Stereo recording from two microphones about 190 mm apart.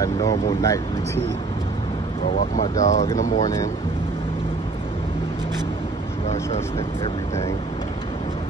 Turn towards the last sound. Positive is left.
turn(degrees=30)  # may be behind; listen again after turning